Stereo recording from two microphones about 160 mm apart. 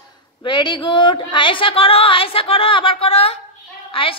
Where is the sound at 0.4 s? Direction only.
30° left (ahead or behind).